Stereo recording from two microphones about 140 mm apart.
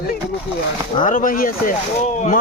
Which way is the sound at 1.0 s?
70° left (ahead or behind).